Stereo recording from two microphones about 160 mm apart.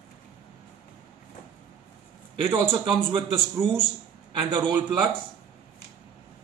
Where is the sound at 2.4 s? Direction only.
35° right (ahead or behind).